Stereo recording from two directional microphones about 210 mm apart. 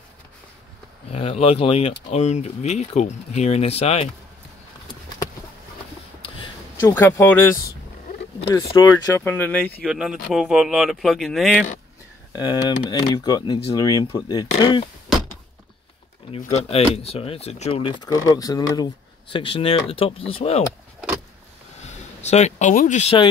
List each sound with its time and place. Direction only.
1.1 s speech: 30° left (ahead or behind)
6.9 s speech: 10° left (ahead or behind)
8.6 s speech: 20° left (ahead or behind)
9.8 s speech: 5° right (ahead or behind)
12.4 s speech: 20° left (ahead or behind)
16.5 s speech: 30° left (ahead or behind)
22.2 s speech: 30° left (ahead or behind)